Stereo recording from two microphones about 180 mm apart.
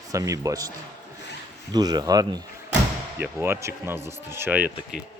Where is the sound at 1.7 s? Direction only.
20° right (ahead or behind).